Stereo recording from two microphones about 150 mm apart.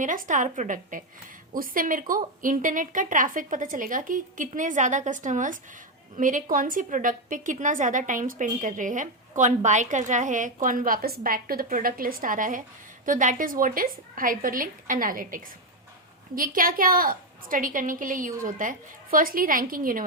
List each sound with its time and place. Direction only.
0.0 s a woman's voice: 60° right (ahead or behind)